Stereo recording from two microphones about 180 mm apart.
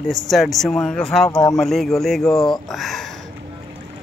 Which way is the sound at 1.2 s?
20° left (ahead or behind).